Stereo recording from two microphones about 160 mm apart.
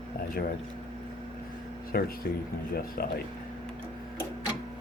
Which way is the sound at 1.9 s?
65° left (ahead or behind).